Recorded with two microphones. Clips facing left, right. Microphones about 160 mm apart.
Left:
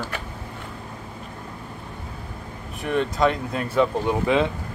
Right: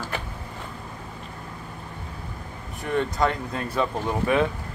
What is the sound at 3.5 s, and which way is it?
Speech, 15° left (ahead or behind).